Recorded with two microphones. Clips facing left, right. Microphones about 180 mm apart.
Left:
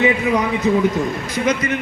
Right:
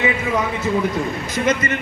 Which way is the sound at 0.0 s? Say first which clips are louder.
Left 4 dB; 15° left (ahead or behind).